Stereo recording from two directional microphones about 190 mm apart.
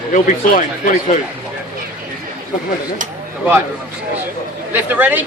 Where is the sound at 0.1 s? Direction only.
40° left (ahead or behind).